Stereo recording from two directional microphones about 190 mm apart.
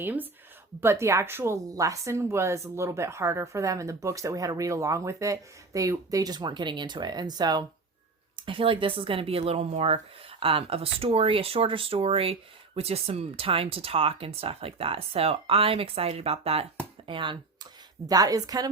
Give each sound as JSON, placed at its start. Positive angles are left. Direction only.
{"t": 0.0, "sound": "a woman's voice", "side_deg": -10}